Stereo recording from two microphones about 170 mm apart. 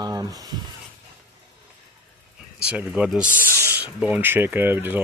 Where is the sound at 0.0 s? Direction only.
20° right (ahead or behind).